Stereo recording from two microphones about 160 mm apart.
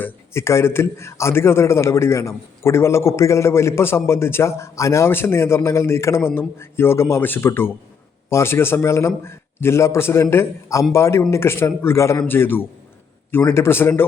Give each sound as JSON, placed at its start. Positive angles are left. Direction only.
{"t": 0.0, "sound": "a man's voice", "side_deg": 15}